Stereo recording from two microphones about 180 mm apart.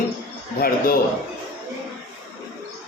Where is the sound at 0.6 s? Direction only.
55° left (ahead or behind).